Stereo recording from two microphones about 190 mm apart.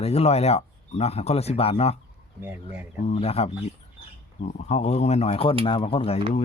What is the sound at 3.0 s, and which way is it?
Speech, 35° left (ahead or behind).